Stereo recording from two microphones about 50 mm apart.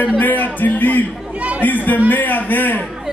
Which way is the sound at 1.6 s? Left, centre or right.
Left.